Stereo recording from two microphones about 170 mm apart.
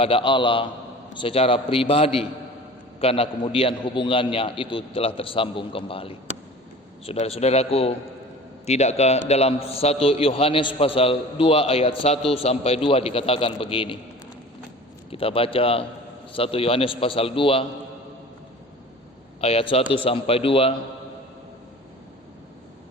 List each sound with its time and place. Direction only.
0.0 s a man's voice: 30° left (ahead or behind)
15.1 s a man's voice: 35° left (ahead or behind)
19.4 s a man's voice: 35° left (ahead or behind)